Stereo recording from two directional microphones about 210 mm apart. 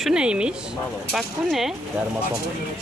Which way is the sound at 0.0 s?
5° right (ahead or behind).